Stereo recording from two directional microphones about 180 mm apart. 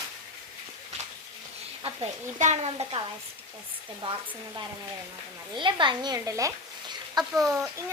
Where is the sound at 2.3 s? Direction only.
40° right (ahead or behind).